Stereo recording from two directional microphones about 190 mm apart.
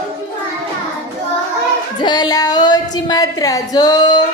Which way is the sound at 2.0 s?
20° left (ahead or behind).